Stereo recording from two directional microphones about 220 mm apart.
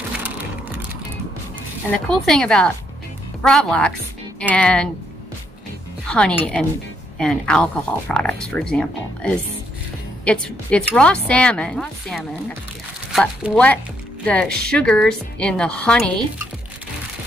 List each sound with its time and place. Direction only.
2.0 s speech: 5° left (ahead or behind)
6.0 s speech: 5° left (ahead or behind)